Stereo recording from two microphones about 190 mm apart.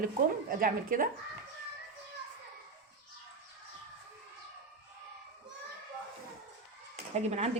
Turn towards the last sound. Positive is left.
turn(degrees=-35)  # may be behind; listen again after turning